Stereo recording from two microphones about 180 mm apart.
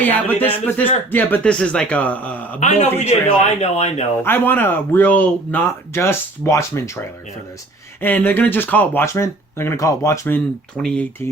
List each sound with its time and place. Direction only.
0.0 s speech: 10° left (ahead or behind)
2.6 s a man's voice: 40° left (ahead or behind)
4.2 s speech: 10° left (ahead or behind)
8.0 s speech: 10° left (ahead or behind)